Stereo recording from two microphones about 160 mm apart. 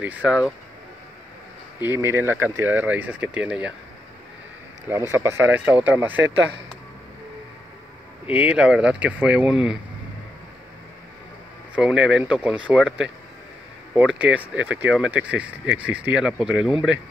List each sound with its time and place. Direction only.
0.0 s speech: 10° right (ahead or behind)
1.8 s speech: 15° right (ahead or behind)
4.8 s speech: 15° right (ahead or behind)
8.3 s speech: 5° right (ahead or behind)
11.7 s speech: 5° right (ahead or behind)